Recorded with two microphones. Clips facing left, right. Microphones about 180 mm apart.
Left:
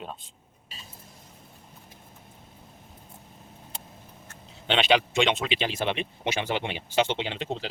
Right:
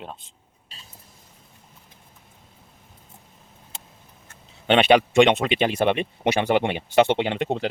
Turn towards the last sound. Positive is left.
turn(degrees=-60)  # may be behind; listen again after turning